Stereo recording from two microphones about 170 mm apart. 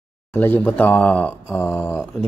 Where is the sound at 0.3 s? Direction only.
10° left (ahead or behind).